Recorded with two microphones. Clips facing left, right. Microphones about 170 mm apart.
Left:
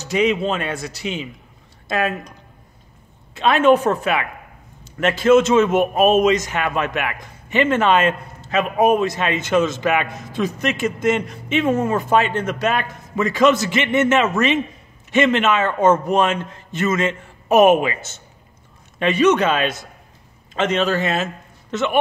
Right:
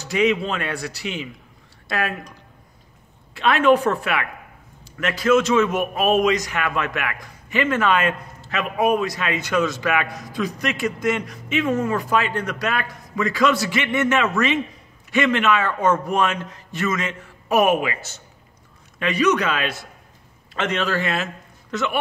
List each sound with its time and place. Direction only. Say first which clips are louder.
0.0 s a man's voice: left 2 dB; 20° left (ahead or behind)
3.3 s a man's voice: left 2 dB; 25° left (ahead or behind)